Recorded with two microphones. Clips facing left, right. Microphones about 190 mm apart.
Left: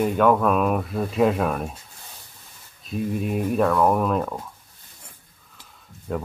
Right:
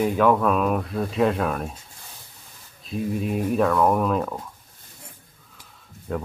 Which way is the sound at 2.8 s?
Centre (ahead or behind).